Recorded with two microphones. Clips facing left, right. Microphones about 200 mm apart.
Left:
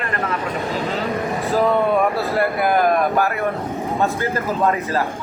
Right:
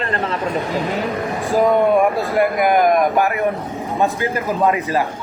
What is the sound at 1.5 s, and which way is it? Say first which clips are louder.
A man's voice: right 3 dB; 15° right (ahead or behind).